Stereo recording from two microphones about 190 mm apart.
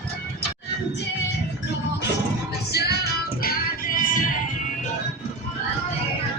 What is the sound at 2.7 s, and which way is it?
Music, 60° left (ahead or behind).